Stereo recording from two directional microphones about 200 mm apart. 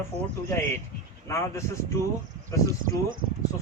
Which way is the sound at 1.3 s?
15° left (ahead or behind).